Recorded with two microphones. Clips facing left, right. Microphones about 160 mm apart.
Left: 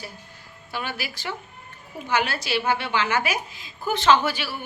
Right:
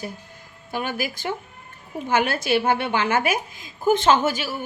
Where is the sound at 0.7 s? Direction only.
50° right (ahead or behind).